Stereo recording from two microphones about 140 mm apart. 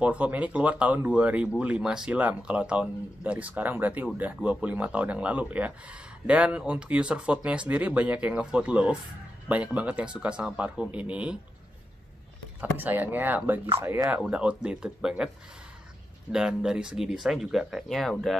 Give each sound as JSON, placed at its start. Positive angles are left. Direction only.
{"t": 0.0, "sound": "speech", "side_deg": -10}
{"t": 12.5, "sound": "speech", "side_deg": -15}
{"t": 14.0, "sound": "speech", "side_deg": -5}
{"t": 16.3, "sound": "speech", "side_deg": -5}